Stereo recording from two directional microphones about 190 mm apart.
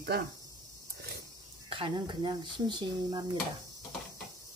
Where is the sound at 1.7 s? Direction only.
25° right (ahead or behind).